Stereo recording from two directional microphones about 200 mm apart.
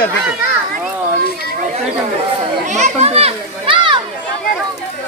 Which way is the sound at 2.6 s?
35° right (ahead or behind).